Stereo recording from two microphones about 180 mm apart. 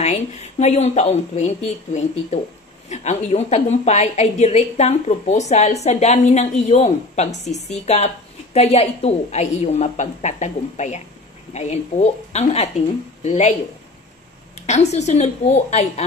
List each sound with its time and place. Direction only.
0.0 s a woman's voice: 40° left (ahead or behind)
14.7 s a woman's voice: 40° left (ahead or behind)